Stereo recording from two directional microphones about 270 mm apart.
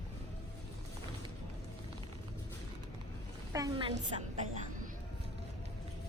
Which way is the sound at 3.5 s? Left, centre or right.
Centre.